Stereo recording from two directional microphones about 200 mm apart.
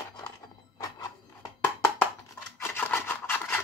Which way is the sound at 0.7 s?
15° left (ahead or behind).